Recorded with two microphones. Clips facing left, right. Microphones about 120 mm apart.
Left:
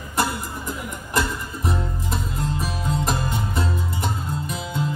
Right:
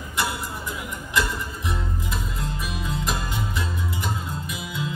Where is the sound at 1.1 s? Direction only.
40° left (ahead or behind).